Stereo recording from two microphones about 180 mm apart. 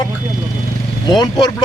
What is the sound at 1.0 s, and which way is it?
Speech, 20° left (ahead or behind).